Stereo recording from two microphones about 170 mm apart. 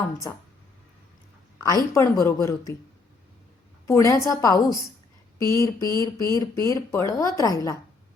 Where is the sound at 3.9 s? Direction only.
15° left (ahead or behind).